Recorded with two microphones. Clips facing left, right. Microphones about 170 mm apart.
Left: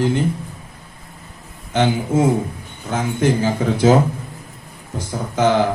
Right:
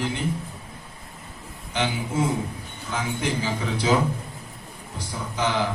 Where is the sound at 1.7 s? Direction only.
45° left (ahead or behind).